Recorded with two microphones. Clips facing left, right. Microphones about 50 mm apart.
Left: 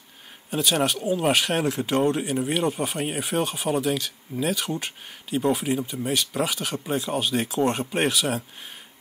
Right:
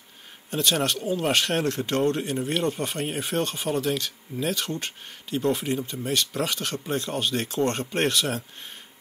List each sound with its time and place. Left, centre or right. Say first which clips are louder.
0.5 s speech: left 1 dB; centre